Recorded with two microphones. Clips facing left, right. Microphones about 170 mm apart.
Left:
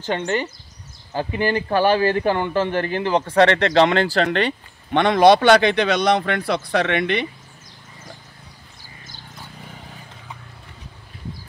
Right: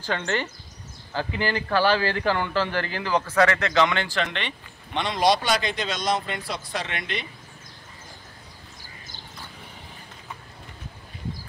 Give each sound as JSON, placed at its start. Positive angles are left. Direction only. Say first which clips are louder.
{"t": 0.0, "sound": "a man's voice", "louder": "left 4 dB", "side_deg": 15}
{"t": 4.9, "sound": "a man's voice", "louder": "left 9 dB", "side_deg": 60}